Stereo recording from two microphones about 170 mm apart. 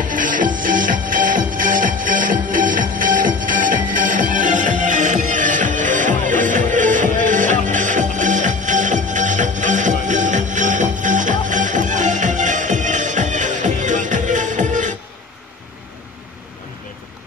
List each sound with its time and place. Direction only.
0.1 s music: 50° right (ahead or behind)